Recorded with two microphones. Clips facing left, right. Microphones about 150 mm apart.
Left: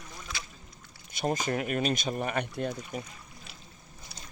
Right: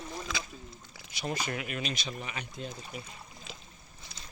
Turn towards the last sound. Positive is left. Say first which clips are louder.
# left 6 dB
turn(degrees=40)  # may be behind; listen again after turning